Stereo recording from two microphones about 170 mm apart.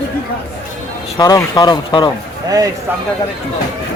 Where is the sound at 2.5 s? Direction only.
20° right (ahead or behind).